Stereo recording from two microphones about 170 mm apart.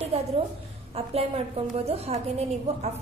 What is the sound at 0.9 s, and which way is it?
A woman's voice, 40° right (ahead or behind).